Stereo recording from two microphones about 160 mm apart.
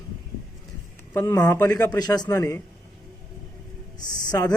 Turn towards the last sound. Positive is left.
turn(degrees=20)  # may be behind; listen again after turning